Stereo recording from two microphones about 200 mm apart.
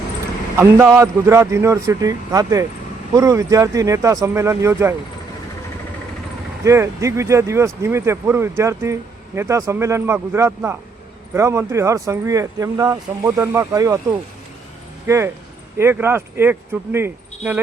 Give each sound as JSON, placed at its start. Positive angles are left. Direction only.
{"t": 0.5, "sound": "speech", "side_deg": -15}
{"t": 6.7, "sound": "speech", "side_deg": -15}